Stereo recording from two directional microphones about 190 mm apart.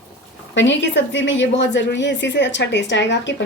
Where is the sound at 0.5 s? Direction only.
75° left (ahead or behind).